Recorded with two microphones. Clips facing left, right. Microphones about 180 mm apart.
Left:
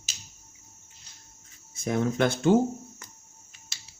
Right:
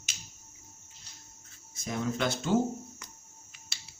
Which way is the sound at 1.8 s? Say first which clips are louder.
Left 6 dB; 55° left (ahead or behind).